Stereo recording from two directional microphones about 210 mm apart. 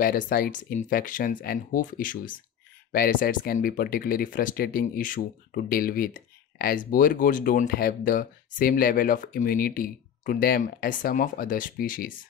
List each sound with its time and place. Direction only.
0.0 s speech: 45° left (ahead or behind)